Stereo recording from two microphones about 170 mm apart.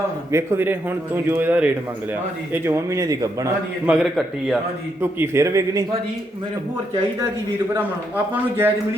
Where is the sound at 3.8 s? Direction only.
5° right (ahead or behind).